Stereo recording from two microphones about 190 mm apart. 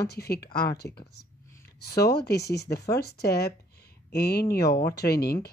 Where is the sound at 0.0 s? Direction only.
55° left (ahead or behind).